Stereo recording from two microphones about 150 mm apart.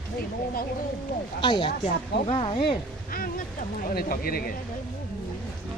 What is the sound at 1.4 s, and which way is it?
Speech, 30° left (ahead or behind).